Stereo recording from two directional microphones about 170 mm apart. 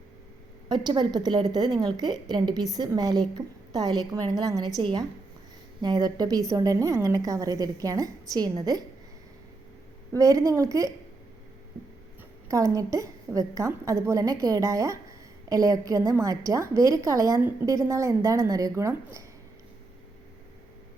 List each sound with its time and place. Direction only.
0.7 s a woman's voice: 25° right (ahead or behind)
10.1 s a woman's voice: 20° right (ahead or behind)
12.5 s a woman's voice: 20° right (ahead or behind)